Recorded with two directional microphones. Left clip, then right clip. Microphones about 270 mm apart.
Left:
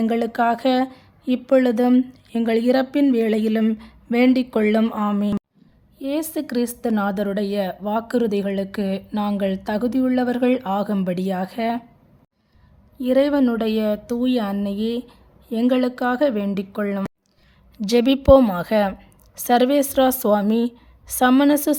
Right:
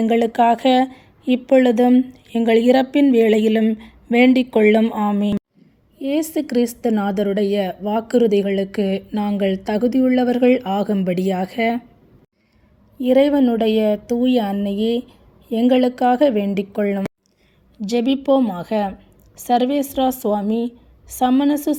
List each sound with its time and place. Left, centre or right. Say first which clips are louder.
0.0 s speech: right 4 dB; centre
13.0 s speech: right 3 dB; centre
17.7 s a woman's voice: left 2 dB; left